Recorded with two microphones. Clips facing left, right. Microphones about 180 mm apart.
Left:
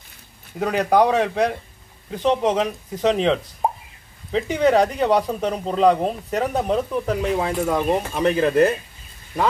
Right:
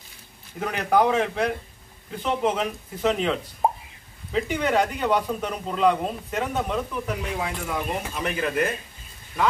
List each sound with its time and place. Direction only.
0.6 s a man's voice: 35° left (ahead or behind)
3.6 s a sound: centre (ahead or behind)
4.3 s a man's voice: 35° left (ahead or behind)